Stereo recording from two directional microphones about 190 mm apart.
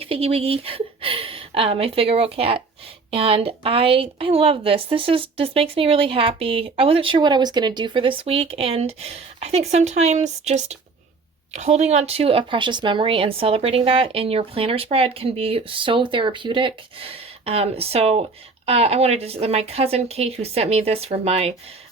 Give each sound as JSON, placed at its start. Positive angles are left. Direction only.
{"t": 0.0, "sound": "a woman's voice", "side_deg": -30}